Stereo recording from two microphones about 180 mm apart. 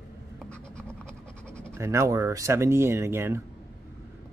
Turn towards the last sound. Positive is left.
turn(degrees=-15)  # may be behind; listen again after turning